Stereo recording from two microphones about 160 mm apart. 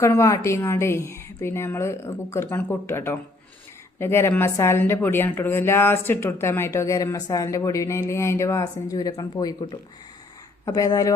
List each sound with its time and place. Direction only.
0.0 s a woman's voice: 20° left (ahead or behind)
10.7 s speech: 20° left (ahead or behind)